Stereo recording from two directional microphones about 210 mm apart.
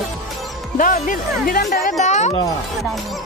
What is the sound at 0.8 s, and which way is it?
Speech, 40° left (ahead or behind).